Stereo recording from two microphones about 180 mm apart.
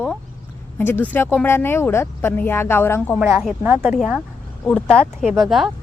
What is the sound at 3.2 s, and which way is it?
Speech, 10° right (ahead or behind).